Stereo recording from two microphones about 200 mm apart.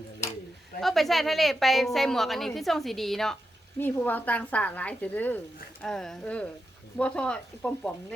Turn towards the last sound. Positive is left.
turn(degrees=5)  # may be behind; listen again after turning